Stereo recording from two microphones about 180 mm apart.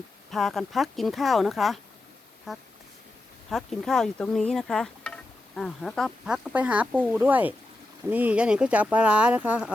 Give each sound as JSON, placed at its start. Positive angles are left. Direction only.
{"t": 0.3, "sound": "speech", "side_deg": 0}